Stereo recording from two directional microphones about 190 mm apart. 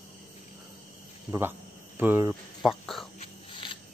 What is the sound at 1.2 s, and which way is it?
Speech, 10° right (ahead or behind).